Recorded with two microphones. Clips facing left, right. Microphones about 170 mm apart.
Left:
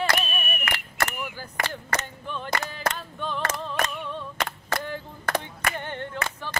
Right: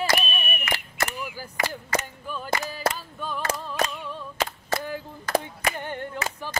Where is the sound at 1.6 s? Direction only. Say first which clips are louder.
Right 3 dB; 10° right (ahead or behind).